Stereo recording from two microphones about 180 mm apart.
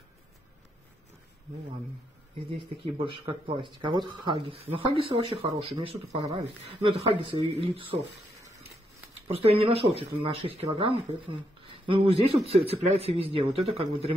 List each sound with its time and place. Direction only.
2.8 s speech: 30° right (ahead or behind)
9.3 s speech: 30° right (ahead or behind)